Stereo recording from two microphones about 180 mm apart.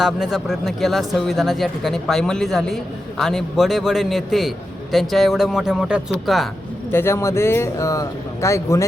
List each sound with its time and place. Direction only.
0.0 s speech: centre (ahead or behind)
6.9 s speech: 15° left (ahead or behind)